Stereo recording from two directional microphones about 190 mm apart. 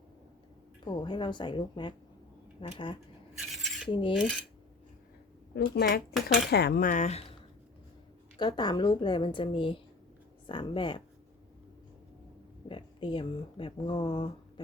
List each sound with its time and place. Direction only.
0.9 s a woman's voice: 25° left (ahead or behind)
3.3 s a sound: centre (ahead or behind)
3.8 s a woman's voice: 25° left (ahead or behind)
4.1 s coin: centre (ahead or behind)
5.5 s speech: 55° left (ahead or behind); by 7.3 s 35° left (ahead or behind)
8.4 s a woman's voice: 25° left (ahead or behind)
12.6 s speech: 25° left (ahead or behind)